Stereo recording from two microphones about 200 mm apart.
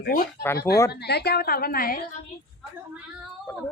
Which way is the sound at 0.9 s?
55° left (ahead or behind).